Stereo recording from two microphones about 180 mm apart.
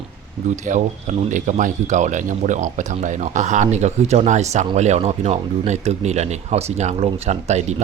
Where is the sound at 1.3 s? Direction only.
45° right (ahead or behind).